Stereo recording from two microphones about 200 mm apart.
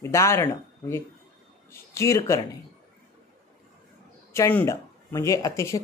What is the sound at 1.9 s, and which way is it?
Speech, 15° left (ahead or behind).